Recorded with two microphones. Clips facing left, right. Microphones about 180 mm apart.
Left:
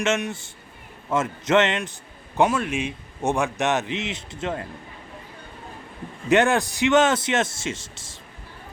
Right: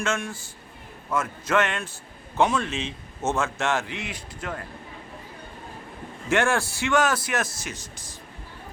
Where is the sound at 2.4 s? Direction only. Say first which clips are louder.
Left 2 dB; 10° left (ahead or behind); by 4.6 s 25° left (ahead or behind).